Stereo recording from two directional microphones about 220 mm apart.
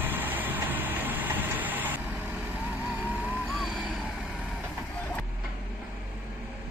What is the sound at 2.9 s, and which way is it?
Vehicle, 5° right (ahead or behind).